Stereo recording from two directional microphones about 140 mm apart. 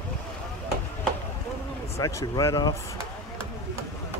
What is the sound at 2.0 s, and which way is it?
Speech, 25° left (ahead or behind).